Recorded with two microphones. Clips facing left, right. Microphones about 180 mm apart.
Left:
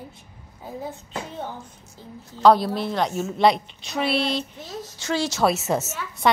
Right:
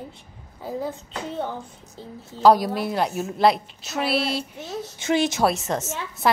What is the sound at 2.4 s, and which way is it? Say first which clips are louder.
A woman's voice: even; 10° right (ahead or behind).